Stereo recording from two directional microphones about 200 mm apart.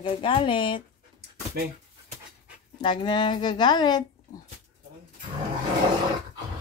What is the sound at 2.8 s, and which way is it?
Speech, 20° left (ahead or behind).